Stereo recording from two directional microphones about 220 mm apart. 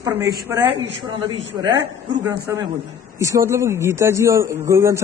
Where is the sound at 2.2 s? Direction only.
15° right (ahead or behind).